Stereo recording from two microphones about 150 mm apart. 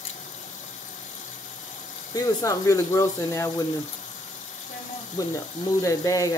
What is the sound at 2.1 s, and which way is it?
Speech, 20° left (ahead or behind).